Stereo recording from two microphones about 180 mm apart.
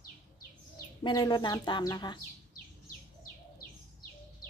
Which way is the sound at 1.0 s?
25° left (ahead or behind).